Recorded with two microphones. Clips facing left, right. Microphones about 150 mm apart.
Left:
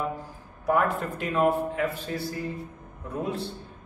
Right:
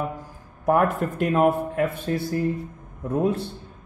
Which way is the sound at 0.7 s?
50° right (ahead or behind).